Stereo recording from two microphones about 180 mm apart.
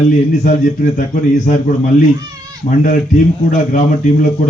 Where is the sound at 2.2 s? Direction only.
20° right (ahead or behind).